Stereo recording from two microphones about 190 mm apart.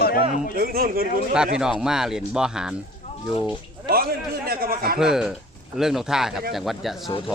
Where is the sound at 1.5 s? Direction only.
5° right (ahead or behind).